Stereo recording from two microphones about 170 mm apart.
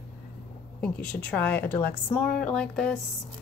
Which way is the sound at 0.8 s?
5° left (ahead or behind).